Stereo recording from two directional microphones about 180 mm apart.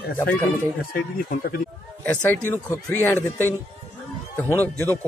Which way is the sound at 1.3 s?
55° left (ahead or behind).